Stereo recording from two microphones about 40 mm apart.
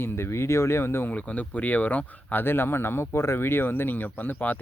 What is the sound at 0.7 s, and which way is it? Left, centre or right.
Speech, left.